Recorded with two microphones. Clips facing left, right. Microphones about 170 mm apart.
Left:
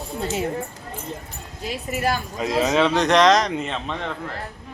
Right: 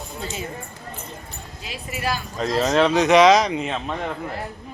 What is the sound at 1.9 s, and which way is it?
Speech, 45° left (ahead or behind).